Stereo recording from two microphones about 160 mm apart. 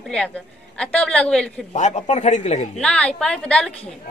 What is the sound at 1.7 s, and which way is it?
Speech, 50° left (ahead or behind).